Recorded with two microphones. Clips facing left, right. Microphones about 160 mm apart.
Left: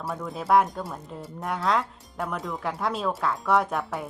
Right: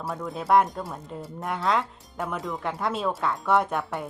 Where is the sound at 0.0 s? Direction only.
Centre (ahead or behind).